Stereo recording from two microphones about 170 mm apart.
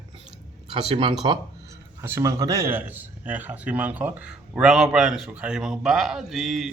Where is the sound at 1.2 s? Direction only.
25° right (ahead or behind).